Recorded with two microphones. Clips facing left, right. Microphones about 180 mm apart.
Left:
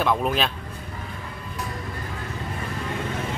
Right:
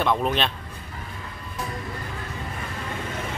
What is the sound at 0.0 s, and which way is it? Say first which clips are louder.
Speech: even; 5° left (ahead or behind).